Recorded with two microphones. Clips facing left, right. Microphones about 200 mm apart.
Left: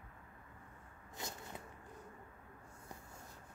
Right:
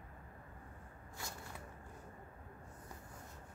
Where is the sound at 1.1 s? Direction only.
20° left (ahead or behind).